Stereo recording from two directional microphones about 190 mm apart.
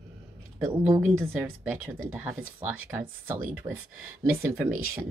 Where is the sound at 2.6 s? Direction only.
10° right (ahead or behind).